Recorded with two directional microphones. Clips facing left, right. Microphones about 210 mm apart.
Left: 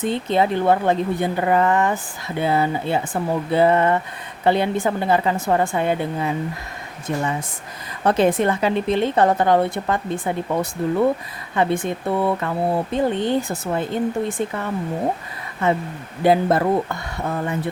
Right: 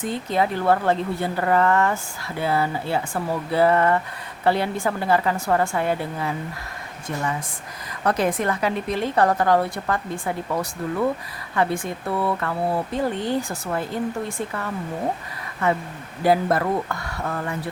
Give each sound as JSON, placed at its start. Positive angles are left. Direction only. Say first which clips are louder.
{"t": 0.0, "sound": "a woman's voice", "louder": "left 4 dB", "side_deg": 25}
{"t": 16.2, "sound": "a woman's voice", "louder": "left 3 dB", "side_deg": 25}